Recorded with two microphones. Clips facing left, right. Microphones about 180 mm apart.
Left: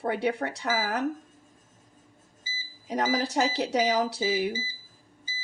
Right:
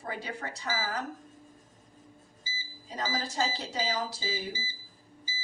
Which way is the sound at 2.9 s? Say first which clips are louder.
Left 8 dB; 75° left (ahead or behind).